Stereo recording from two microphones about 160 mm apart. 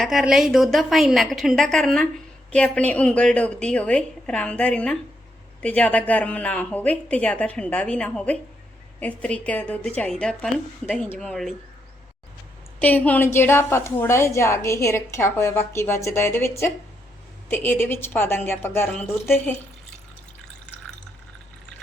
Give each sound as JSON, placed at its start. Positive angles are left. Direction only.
{"t": 0.0, "sound": "a woman's voice", "side_deg": 0}
{"t": 12.8, "sound": "a woman's voice", "side_deg": 10}